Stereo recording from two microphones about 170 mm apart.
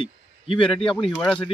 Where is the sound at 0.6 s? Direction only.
5° left (ahead or behind).